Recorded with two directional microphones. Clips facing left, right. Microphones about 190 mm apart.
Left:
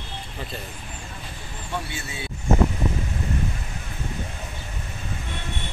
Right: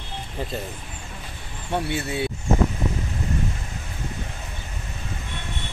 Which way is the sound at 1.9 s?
60° right (ahead or behind).